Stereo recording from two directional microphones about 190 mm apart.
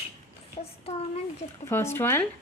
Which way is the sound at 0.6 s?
30° left (ahead or behind).